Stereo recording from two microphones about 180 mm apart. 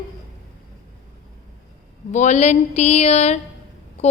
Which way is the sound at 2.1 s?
40° left (ahead or behind).